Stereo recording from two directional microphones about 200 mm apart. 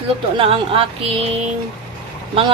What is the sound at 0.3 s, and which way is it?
Speech, 30° right (ahead or behind).